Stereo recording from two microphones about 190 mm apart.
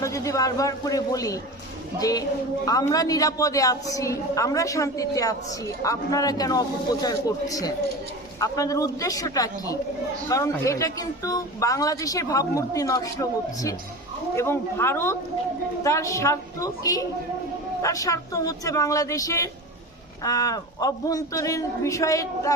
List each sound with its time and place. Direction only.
0.0 s a woman's voice: 15° left (ahead or behind)